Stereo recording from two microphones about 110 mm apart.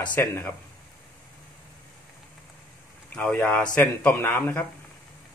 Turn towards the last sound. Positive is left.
turn(degrees=20)  # may be behind; listen again after turning